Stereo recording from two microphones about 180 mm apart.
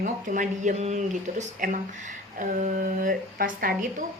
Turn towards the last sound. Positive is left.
turn(degrees=-50)  # may be behind; listen again after turning